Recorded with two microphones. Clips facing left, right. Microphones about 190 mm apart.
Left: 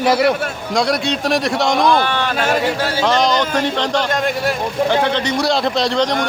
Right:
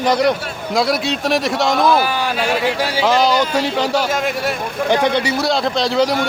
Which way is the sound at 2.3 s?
45° left (ahead or behind).